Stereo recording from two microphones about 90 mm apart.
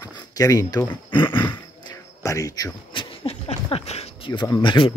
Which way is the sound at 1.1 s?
65° left (ahead or behind).